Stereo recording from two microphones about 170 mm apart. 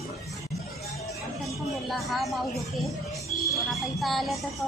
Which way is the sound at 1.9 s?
Centre (ahead or behind).